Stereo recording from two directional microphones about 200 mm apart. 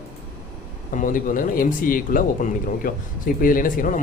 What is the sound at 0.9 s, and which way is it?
Speech, 40° left (ahead or behind).